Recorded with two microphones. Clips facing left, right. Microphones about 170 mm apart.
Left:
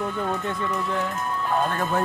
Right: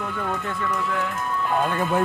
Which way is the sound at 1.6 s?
5° right (ahead or behind).